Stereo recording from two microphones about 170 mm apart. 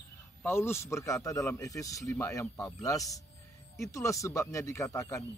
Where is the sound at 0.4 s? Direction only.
15° left (ahead or behind).